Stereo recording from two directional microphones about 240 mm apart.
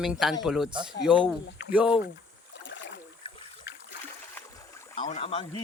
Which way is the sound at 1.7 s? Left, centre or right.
Centre.